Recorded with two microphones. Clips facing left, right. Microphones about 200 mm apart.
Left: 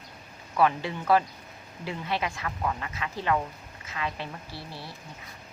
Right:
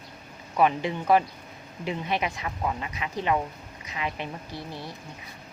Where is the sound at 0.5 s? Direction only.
20° right (ahead or behind).